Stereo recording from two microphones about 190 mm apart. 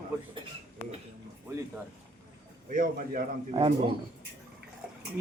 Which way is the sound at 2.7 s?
45° right (ahead or behind).